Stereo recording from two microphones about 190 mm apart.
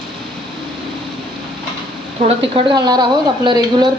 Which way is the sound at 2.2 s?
30° right (ahead or behind).